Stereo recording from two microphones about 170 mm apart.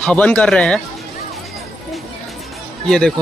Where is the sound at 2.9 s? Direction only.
5° left (ahead or behind).